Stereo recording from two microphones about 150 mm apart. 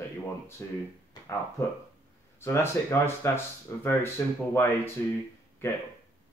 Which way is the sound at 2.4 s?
15° left (ahead or behind).